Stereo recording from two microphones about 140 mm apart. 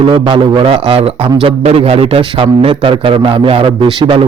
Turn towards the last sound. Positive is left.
turn(degrees=-35)  # may be behind; listen again after turning